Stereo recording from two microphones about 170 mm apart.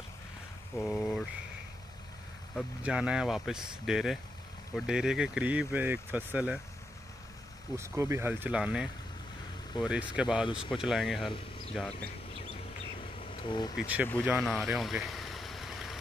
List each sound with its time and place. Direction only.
0.7 s a sound: centre (ahead or behind)
2.8 s speech: 5° right (ahead or behind)
7.7 s speech: 15° right (ahead or behind); by 12.1 s centre (ahead or behind)
13.2 s a sound: 30° left (ahead or behind)
13.7 s speech: 10° right (ahead or behind)
14.4 s vehicle: centre (ahead or behind)